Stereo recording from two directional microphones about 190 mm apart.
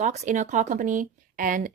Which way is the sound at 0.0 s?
40° right (ahead or behind).